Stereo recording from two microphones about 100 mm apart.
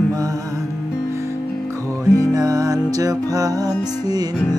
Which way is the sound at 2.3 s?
40° right (ahead or behind).